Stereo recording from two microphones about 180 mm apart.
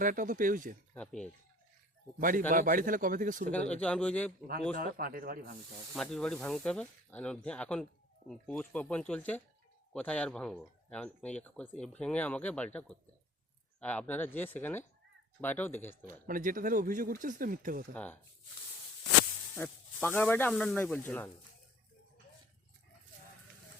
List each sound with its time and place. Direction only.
0.0 s speech: 50° right (ahead or behind)
0.9 s speech: 5° left (ahead or behind)
2.5 s speech: 50° right (ahead or behind)
3.5 s speech: 5° left (ahead or behind)
4.8 s speech: 55° right (ahead or behind)
5.9 s speech: centre (ahead or behind)
16.2 s speech: 50° right (ahead or behind)
17.9 s speech: 10° left (ahead or behind)
19.5 s speech: 10° left (ahead or behind)